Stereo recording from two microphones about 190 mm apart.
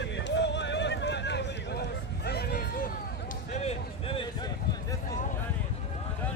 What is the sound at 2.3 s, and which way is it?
Hubbub, 55° left (ahead or behind).